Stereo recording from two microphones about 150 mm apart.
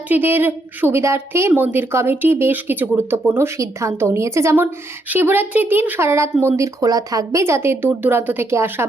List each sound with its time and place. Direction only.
0.1 s a woman's voice: 15° right (ahead or behind)